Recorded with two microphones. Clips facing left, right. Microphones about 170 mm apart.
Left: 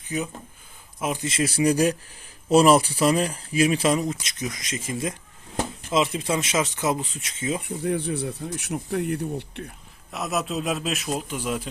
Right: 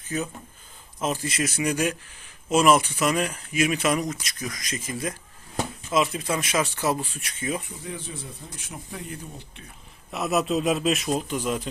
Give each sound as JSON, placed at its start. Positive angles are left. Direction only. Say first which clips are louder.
{"t": 0.1, "sound": "speech", "louder": "left 1 dB", "side_deg": 15}
{"t": 1.2, "sound": "speech", "louder": "left 4 dB", "side_deg": 25}
{"t": 7.6, "sound": "speech", "louder": "left 11 dB", "side_deg": 60}
{"t": 10.1, "sound": "a man's voice", "louder": "right 3 dB", "side_deg": 0}